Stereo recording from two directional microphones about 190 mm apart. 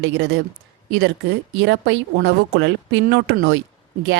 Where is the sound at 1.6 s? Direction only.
75° right (ahead or behind).